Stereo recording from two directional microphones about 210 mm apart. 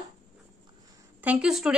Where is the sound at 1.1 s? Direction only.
5° right (ahead or behind).